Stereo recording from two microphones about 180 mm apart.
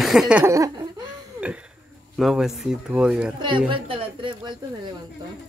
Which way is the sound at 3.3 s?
25° right (ahead or behind).